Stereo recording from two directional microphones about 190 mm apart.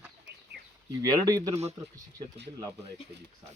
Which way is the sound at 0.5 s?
60° right (ahead or behind).